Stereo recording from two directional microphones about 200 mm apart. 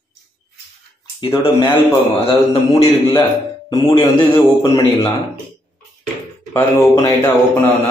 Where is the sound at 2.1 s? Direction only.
30° left (ahead or behind).